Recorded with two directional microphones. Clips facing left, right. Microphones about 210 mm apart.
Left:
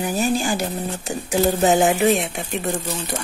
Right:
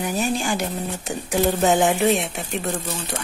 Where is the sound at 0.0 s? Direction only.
5° left (ahead or behind).